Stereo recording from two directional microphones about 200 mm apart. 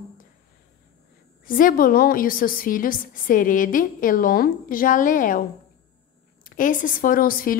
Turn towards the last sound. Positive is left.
turn(degrees=45)  # may be behind; listen again after turning